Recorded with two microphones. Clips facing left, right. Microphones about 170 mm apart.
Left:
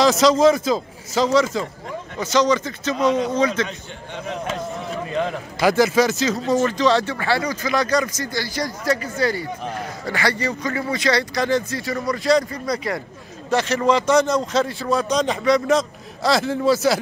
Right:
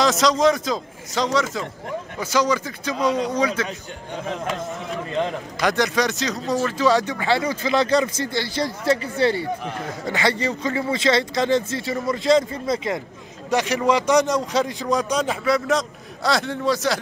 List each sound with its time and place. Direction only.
0.0 s a man's voice: centre (ahead or behind)
5.2 s speech: 5° left (ahead or behind)